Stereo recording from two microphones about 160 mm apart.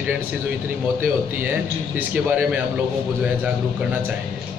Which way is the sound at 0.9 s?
10° right (ahead or behind).